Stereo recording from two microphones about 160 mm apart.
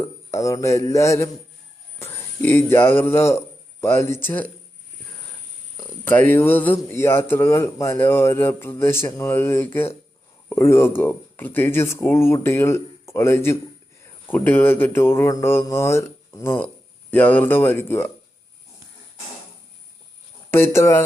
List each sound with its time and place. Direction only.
0.3 s a man's voice: 20° left (ahead or behind)
6.1 s a man's voice: 10° left (ahead or behind)
20.5 s a man's voice: 15° left (ahead or behind)